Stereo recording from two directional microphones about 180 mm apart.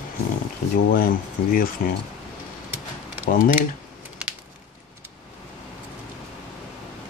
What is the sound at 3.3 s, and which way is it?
Speech, 50° left (ahead or behind).